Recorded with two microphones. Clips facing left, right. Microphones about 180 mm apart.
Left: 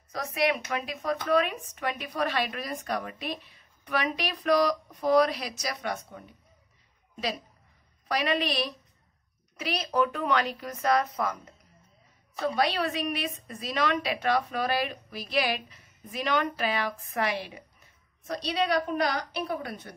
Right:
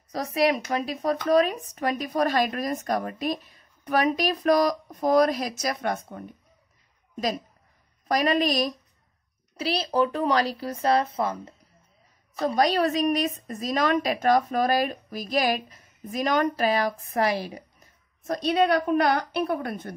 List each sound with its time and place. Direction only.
0.1 s a woman's voice: 35° right (ahead or behind)
12.4 s a woman's voice: 40° right (ahead or behind)